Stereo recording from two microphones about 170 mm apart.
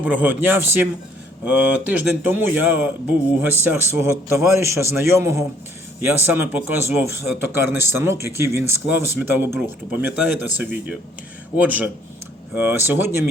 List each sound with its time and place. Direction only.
0.0 s speech: 10° right (ahead or behind)